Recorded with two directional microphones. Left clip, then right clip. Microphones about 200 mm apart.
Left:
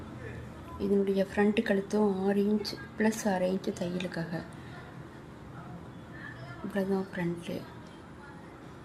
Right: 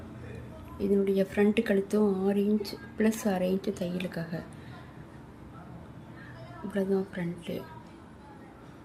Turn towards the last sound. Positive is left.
turn(degrees=-15)  # may be behind; listen again after turning